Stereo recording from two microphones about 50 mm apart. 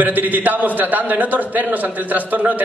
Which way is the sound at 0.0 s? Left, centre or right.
Right.